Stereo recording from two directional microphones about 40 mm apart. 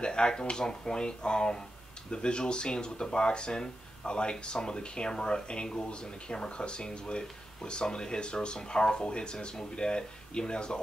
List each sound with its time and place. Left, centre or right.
0.0 s speech: left